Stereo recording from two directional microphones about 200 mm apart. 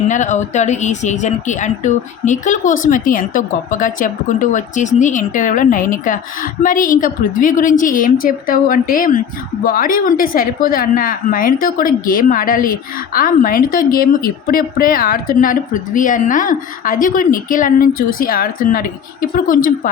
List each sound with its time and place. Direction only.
0.1 s a woman's voice: 35° left (ahead or behind)